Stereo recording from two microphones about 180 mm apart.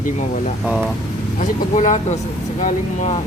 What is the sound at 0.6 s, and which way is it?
Speech, 5° right (ahead or behind).